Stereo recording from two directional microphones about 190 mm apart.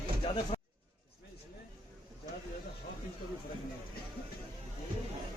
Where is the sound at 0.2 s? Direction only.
30° left (ahead or behind).